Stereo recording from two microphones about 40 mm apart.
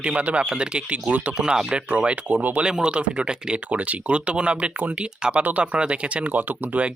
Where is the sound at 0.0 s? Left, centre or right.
Right.